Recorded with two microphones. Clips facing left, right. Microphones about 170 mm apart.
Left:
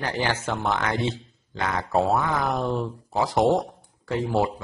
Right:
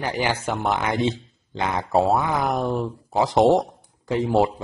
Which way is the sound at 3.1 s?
20° right (ahead or behind).